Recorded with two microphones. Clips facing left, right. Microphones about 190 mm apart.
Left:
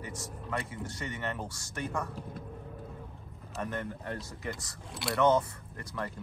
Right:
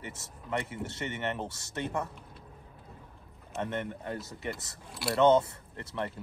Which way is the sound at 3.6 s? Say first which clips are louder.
Right 1 dB; 25° right (ahead or behind).